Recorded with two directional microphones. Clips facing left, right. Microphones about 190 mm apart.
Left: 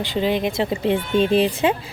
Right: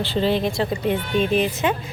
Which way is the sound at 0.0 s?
15° left (ahead or behind).